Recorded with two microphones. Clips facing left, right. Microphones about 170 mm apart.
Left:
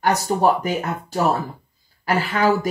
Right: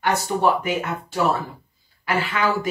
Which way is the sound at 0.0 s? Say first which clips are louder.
Left 2 dB; 40° left (ahead or behind).